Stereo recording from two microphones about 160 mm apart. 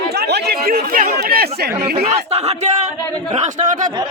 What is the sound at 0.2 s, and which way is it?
Chatter, 90° right.